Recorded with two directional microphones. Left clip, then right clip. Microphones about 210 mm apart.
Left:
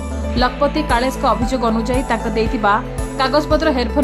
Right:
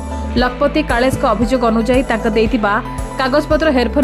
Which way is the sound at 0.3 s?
15° right (ahead or behind).